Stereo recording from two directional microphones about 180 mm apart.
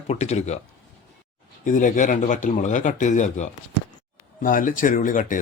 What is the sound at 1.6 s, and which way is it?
Speech, 45° left (ahead or behind).